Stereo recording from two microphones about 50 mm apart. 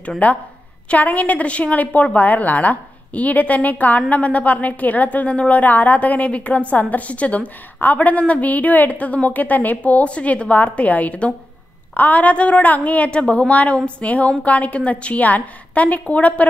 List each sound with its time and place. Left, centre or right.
0.2 s a woman's voice: left